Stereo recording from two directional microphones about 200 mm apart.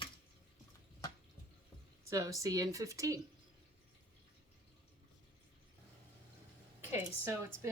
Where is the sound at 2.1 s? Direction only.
15° right (ahead or behind).